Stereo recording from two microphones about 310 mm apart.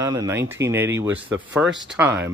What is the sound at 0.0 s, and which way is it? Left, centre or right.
Speech, centre.